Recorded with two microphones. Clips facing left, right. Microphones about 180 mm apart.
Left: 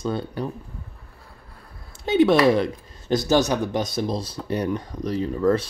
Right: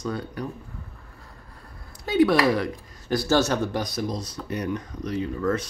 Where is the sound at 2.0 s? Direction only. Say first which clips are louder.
Left 3 dB; 25° left (ahead or behind).